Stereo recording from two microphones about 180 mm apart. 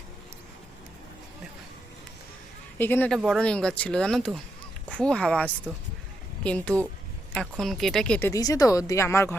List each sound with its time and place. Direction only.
2.7 s speech: 10° left (ahead or behind)
8.3 s speech: 20° left (ahead or behind)